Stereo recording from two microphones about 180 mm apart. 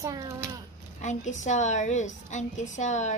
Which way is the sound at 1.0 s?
40° left (ahead or behind).